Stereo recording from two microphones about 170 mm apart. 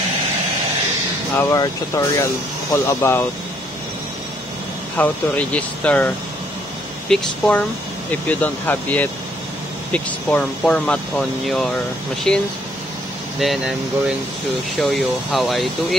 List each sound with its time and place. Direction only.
1.3 s speech: 15° left (ahead or behind)
4.9 s speech: 10° left (ahead or behind)
14.8 s speech: centre (ahead or behind)